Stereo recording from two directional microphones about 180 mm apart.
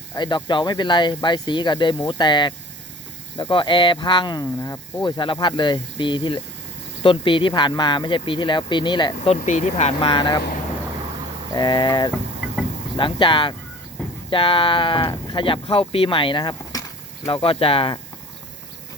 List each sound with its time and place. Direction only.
0.2 s speech: 25° left (ahead or behind)
11.5 s speech: 25° left (ahead or behind)